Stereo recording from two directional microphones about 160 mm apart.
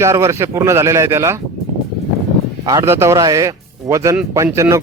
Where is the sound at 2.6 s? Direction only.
20° right (ahead or behind).